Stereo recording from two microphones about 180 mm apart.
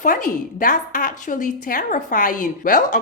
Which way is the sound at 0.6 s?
45° left (ahead or behind).